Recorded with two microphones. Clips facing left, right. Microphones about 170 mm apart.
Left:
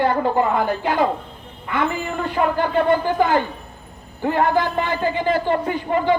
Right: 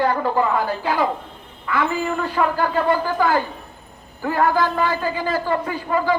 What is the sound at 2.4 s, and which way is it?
A man's voice, 25° left (ahead or behind).